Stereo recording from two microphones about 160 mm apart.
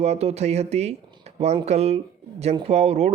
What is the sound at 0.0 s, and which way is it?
Speech, 40° right (ahead or behind).